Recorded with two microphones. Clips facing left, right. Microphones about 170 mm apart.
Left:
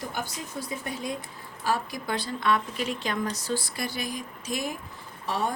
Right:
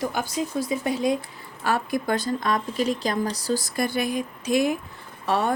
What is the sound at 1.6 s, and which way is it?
A woman's voice, 55° right (ahead or behind).